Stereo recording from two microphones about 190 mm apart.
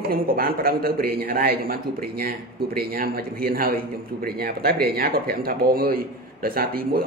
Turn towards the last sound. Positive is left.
turn(degrees=-50)  # may be behind; listen again after turning